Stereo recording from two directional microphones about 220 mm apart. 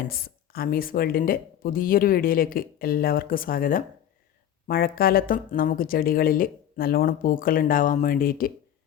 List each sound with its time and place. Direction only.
0.1 s speech: 45° left (ahead or behind)